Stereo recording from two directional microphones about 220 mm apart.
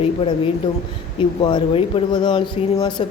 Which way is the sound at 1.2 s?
20° left (ahead or behind).